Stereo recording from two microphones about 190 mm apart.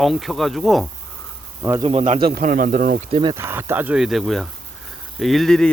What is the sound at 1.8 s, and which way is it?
Speech, 35° right (ahead or behind).